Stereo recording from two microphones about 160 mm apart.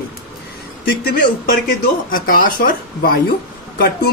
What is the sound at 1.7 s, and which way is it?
Speech, 60° left (ahead or behind).